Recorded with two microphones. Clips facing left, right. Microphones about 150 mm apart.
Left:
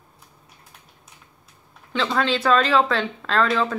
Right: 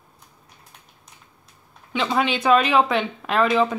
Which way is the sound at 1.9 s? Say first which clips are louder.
Even; 15° right (ahead or behind).